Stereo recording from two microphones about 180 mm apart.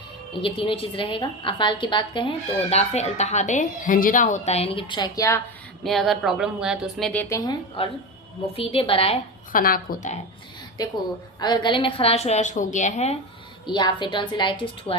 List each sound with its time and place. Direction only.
0.4 s a woman's voice: 30° left (ahead or behind)
5.8 s speech: centre (ahead or behind)
7.1 s a woman's voice: 10° left (ahead or behind)
7.8 s a woman's voice: 30° left (ahead or behind)
9.5 s a woman's voice: 50° left (ahead or behind)
10.8 s a woman's voice: 20° left (ahead or behind); by 13.1 s 40° left (ahead or behind)
13.7 s a woman's voice: 25° left (ahead or behind)